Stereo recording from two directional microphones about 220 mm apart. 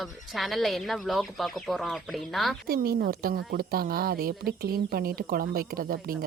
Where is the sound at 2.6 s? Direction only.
45° right (ahead or behind).